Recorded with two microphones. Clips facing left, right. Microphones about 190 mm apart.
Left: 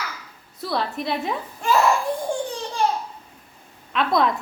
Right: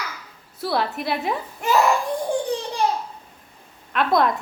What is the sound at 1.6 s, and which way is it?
Speech, 20° right (ahead or behind).